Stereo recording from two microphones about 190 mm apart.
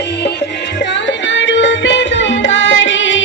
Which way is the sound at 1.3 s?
70° left (ahead or behind).